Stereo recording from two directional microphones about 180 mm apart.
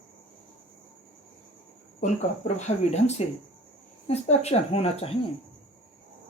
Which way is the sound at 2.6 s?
40° left (ahead or behind).